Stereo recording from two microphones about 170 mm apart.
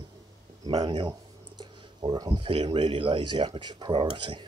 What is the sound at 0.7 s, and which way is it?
Speech, 25° right (ahead or behind).